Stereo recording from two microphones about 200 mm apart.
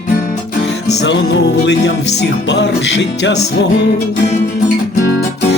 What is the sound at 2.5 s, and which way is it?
Music, 60° left (ahead or behind).